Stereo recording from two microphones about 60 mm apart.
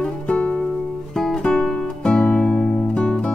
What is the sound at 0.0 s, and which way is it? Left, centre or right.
Music, centre.